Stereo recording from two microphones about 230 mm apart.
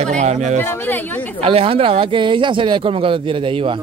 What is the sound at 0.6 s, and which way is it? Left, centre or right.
Speech, centre.